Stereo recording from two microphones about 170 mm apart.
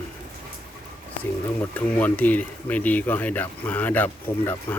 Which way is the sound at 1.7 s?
10° left (ahead or behind).